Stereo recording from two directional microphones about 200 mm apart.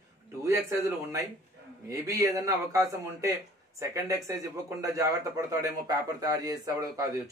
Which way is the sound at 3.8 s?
15° right (ahead or behind).